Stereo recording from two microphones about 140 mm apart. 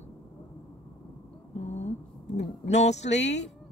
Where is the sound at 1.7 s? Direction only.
50° left (ahead or behind).